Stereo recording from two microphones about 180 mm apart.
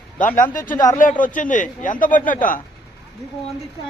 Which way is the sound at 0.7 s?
20° left (ahead or behind).